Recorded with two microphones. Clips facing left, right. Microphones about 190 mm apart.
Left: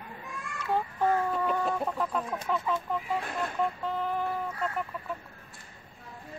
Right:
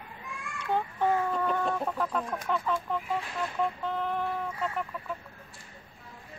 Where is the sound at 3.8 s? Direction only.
5° left (ahead or behind).